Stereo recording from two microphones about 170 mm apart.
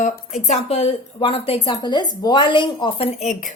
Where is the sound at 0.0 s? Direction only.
45° left (ahead or behind).